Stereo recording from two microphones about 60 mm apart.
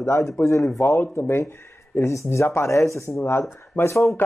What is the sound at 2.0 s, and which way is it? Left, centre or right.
Speech, left.